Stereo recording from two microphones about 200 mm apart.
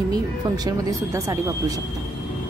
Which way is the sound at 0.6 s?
15° right (ahead or behind).